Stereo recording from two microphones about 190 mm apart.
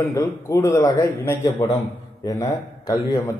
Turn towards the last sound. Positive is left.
turn(degrees=20)  # may be behind; listen again after turning